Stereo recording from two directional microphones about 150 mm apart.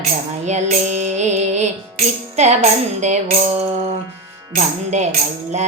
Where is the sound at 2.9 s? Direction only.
50° right (ahead or behind).